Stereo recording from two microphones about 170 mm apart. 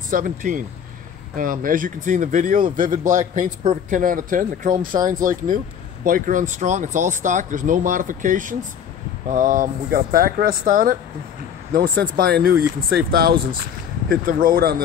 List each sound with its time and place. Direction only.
0.1 s speech: 50° right (ahead or behind)